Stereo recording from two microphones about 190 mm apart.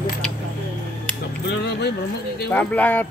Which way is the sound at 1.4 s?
60° left (ahead or behind).